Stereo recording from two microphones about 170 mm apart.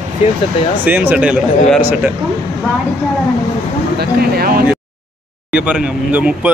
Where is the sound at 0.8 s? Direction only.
10° right (ahead or behind).